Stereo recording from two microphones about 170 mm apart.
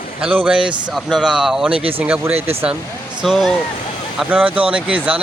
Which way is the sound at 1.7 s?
35° right (ahead or behind).